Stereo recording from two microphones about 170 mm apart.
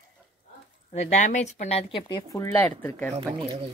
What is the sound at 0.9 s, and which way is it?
Speech, 45° left (ahead or behind).